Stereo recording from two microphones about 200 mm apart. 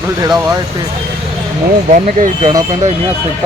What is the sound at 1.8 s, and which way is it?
Speech, 40° right (ahead or behind).